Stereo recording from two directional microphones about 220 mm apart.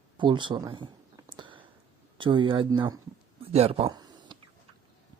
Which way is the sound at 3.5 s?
30° right (ahead or behind).